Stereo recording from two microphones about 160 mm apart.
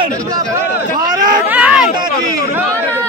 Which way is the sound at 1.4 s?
10° right (ahead or behind).